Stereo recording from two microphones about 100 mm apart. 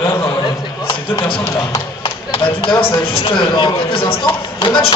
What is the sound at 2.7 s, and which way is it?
Speech, 65° left (ahead or behind).